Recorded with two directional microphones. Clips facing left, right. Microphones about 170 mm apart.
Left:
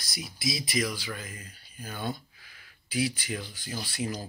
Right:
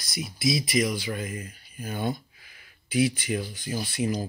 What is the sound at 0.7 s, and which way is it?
Speech, 20° right (ahead or behind).